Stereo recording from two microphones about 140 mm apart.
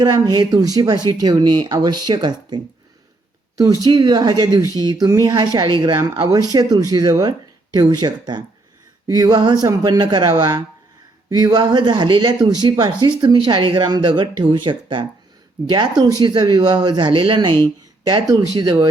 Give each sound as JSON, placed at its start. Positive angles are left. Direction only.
{"t": 0.0, "sound": "speech", "side_deg": -25}
{"t": 3.8, "sound": "speech", "side_deg": -30}